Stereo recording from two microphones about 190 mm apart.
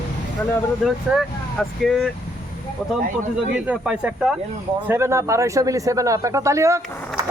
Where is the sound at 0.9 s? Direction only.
Centre (ahead or behind).